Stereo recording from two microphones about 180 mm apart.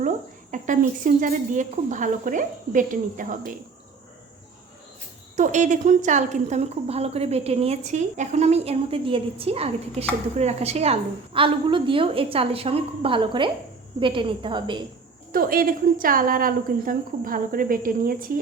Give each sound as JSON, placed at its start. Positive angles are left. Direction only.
{"t": 0.5, "sound": "speech", "side_deg": -45}
{"t": 5.4, "sound": "a woman's voice", "side_deg": -45}
{"t": 15.3, "sound": "speech", "side_deg": -55}